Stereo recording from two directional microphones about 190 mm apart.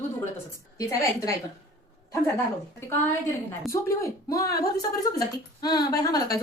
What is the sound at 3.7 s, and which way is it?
A woman's voice, 15° left (ahead or behind).